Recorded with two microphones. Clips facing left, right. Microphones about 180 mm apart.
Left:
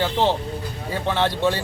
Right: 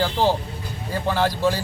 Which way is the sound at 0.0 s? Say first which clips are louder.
Even; centre (ahead or behind).